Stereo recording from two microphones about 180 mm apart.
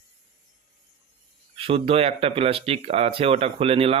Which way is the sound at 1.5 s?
30° right (ahead or behind).